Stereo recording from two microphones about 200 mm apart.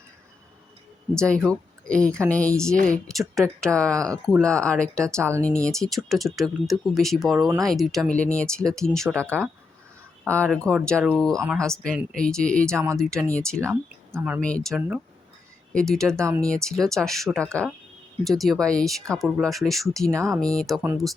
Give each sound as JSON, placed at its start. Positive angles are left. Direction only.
{"t": 1.1, "sound": "speech", "side_deg": 5}
{"t": 3.9, "sound": "speech", "side_deg": -15}
{"t": 4.3, "sound": "speech", "side_deg": 5}
{"t": 10.2, "sound": "speech", "side_deg": 5}
{"t": 12.7, "sound": "speech", "side_deg": -15}
{"t": 13.0, "sound": "speech", "side_deg": 5}
{"t": 13.6, "sound": "speech", "side_deg": -15}
{"t": 14.4, "sound": "speech", "side_deg": 5}
{"t": 14.8, "sound": "speech", "side_deg": -5}
{"t": 15.7, "sound": "speech", "side_deg": 5}
{"t": 16.1, "sound": "speech", "side_deg": -15}
{"t": 16.5, "sound": "speech", "side_deg": 5}
{"t": 20.1, "sound": "speech", "side_deg": -15}
{"t": 20.4, "sound": "speech", "side_deg": 5}